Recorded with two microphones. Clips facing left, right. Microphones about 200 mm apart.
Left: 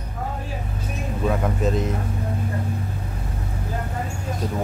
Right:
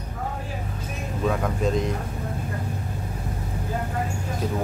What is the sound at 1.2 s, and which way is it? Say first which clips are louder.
Speech: left 1 dB; 5° left (ahead or behind).